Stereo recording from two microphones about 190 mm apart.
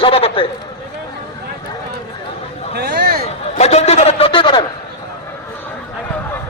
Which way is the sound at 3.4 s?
35° left (ahead or behind).